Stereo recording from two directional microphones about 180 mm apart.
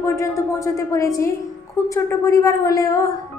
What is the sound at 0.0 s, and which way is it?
A woman's voice, 15° left (ahead or behind).